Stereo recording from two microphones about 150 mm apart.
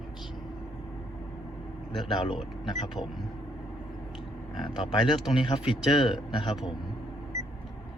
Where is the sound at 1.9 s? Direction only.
35° left (ahead or behind).